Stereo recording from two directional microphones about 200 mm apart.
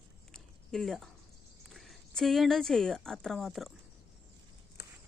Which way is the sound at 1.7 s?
Centre (ahead or behind).